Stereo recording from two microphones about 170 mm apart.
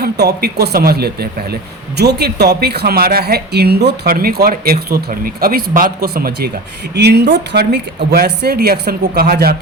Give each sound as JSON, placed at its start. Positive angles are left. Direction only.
{"t": 0.0, "sound": "speech", "side_deg": -70}
{"t": 6.9, "sound": "speech", "side_deg": -75}